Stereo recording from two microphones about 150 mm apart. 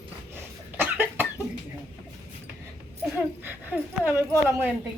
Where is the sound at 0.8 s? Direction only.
15° right (ahead or behind).